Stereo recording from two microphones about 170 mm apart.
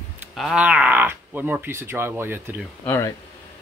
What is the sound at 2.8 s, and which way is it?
Speech, 15° left (ahead or behind).